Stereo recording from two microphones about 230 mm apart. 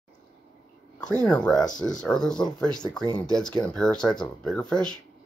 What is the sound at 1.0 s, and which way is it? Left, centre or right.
Speech, centre.